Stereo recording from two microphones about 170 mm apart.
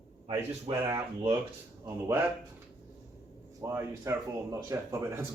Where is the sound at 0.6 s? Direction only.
20° right (ahead or behind).